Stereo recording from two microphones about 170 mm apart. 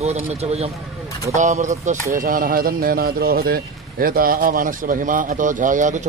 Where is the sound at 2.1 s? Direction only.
55° right (ahead or behind).